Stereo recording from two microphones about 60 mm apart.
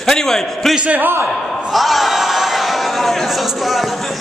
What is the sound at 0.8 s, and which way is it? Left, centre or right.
Speech, right.